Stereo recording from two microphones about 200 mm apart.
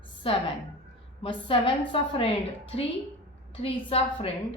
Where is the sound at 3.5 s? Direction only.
30° left (ahead or behind).